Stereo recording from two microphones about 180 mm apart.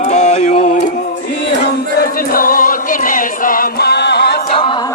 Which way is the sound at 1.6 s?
55° left (ahead or behind).